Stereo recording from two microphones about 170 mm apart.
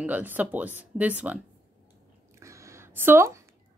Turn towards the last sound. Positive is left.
turn(degrees=-15)  # may be behind; listen again after turning